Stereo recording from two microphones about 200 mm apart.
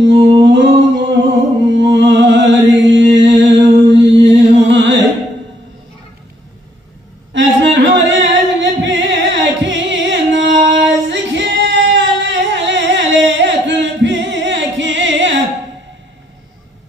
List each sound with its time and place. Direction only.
0.2 s music: 65° right (ahead or behind)
7.3 s singing: 65° right (ahead or behind)